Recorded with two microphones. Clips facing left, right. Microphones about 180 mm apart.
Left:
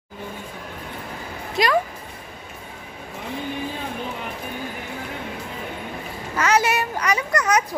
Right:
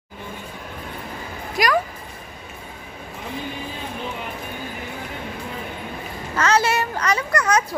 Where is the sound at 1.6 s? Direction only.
25° left (ahead or behind).